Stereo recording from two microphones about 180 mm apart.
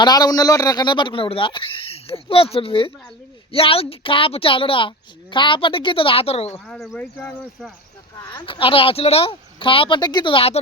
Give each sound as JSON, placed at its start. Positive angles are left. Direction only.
{"t": 0.0, "sound": "a woman's voice", "side_deg": 20}
{"t": 6.5, "sound": "speech", "side_deg": 0}
{"t": 8.2, "sound": "a woman's voice", "side_deg": 25}